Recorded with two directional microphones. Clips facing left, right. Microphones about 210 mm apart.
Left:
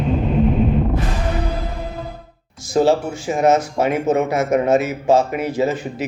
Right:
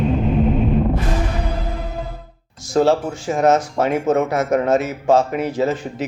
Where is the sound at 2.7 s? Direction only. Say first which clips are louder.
Even; 5° left (ahead or behind).